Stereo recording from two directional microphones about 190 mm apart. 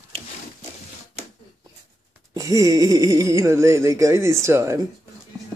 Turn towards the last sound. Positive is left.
turn(degrees=-15)  # may be behind; listen again after turning